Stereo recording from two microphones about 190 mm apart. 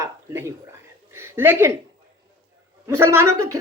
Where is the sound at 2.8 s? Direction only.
15° right (ahead or behind).